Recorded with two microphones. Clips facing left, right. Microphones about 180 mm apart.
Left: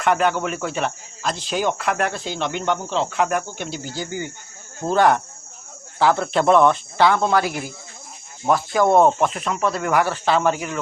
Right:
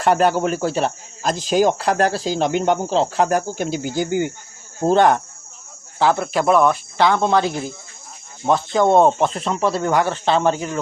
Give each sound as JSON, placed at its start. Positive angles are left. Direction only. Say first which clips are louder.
{"t": 0.0, "sound": "a man's voice", "louder": "right 3 dB", "side_deg": -35}
{"t": 3.9, "sound": "speech", "louder": "right 9 dB", "side_deg": -50}
{"t": 4.9, "sound": "speech", "louder": "left 1 dB", "side_deg": -20}
{"t": 6.3, "sound": "speech", "louder": "left 2 dB", "side_deg": -5}
{"t": 6.9, "sound": "a man's voice", "louder": "right 1 dB", "side_deg": -15}